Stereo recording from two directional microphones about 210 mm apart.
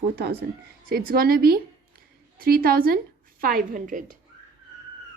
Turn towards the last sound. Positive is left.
turn(degrees=-40)  # may be behind; listen again after turning